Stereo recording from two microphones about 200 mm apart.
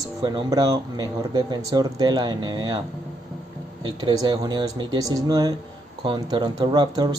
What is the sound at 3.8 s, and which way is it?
Speech, 20° right (ahead or behind).